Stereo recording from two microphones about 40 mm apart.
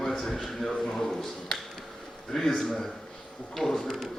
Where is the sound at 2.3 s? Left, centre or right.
Centre.